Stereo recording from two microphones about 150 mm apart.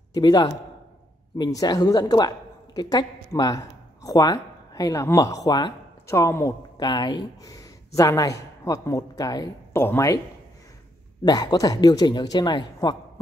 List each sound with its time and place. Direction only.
0.1 s a man's voice: 30° left (ahead or behind)
6.9 s a woman's voice: 30° left (ahead or behind)
11.2 s a woman's voice: 25° left (ahead or behind)